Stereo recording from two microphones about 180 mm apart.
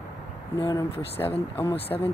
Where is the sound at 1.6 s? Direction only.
35° left (ahead or behind).